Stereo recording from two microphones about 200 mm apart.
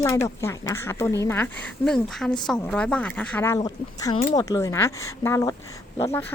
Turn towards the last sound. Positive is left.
turn(degrees=10)  # may be behind; listen again after turning